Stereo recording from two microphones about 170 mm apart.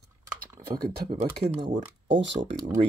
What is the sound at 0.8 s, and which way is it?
Speech, 55° right (ahead or behind).